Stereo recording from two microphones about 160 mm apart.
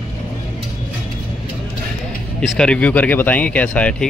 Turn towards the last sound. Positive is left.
turn(degrees=5)  # may be behind; listen again after turning